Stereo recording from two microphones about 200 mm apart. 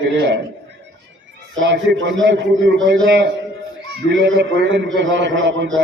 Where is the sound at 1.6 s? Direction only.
65° right (ahead or behind).